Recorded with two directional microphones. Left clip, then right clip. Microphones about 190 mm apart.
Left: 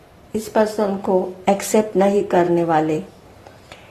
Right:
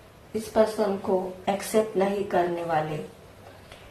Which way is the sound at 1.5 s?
55° left (ahead or behind).